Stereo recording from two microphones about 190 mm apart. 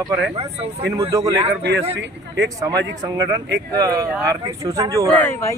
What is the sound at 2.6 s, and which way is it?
Speech, 20° right (ahead or behind).